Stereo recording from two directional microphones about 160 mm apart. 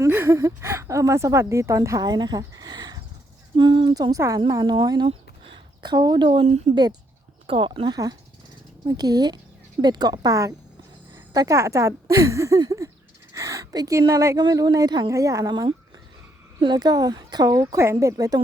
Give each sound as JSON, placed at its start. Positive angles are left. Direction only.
{"t": 0.0, "sound": "speech", "side_deg": -15}